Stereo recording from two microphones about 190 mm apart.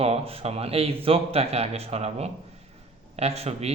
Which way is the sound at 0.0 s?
30° right (ahead or behind).